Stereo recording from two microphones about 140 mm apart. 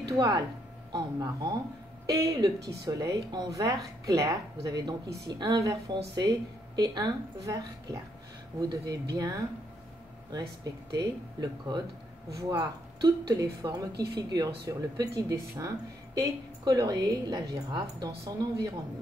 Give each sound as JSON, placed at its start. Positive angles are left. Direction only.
{"t": 0.1, "sound": "speech", "side_deg": -25}
{"t": 10.6, "sound": "speech", "side_deg": -30}